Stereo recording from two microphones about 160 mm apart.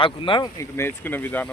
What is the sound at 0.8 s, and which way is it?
Speech, 10° left (ahead or behind).